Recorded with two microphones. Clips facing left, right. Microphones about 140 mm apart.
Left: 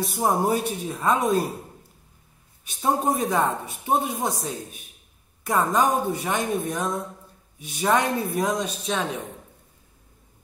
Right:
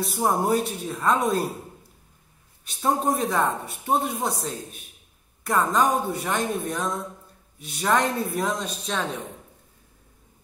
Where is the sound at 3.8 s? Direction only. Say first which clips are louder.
Even; centre (ahead or behind).